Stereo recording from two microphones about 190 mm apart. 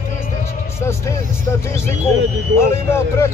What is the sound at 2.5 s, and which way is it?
Vehicle, 15° left (ahead or behind).